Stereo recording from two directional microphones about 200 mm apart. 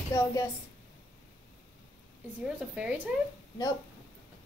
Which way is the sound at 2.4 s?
5° right (ahead or behind).